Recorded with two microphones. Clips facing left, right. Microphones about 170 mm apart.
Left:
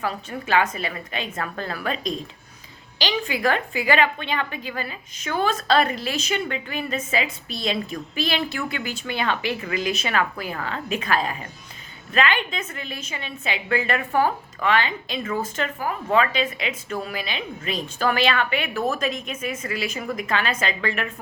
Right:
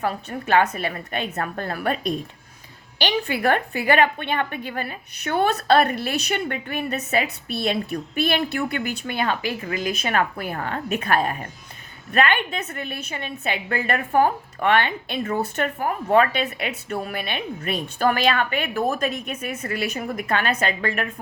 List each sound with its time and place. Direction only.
0.0 s a woman's voice: 55° right (ahead or behind)
3.3 s a woman's voice: 60° right (ahead or behind)
14.2 s a woman's voice: 55° right (ahead or behind)